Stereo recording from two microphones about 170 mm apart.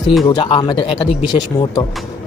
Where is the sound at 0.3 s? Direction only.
25° left (ahead or behind).